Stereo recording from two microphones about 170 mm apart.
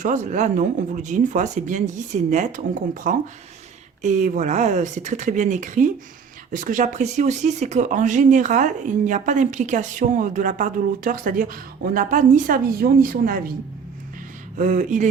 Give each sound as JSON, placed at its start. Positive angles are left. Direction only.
{"t": 0.0, "sound": "a woman's voice", "side_deg": -45}
{"t": 14.6, "sound": "speech", "side_deg": -50}